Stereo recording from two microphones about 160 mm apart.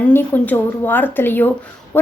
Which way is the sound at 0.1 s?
10° left (ahead or behind).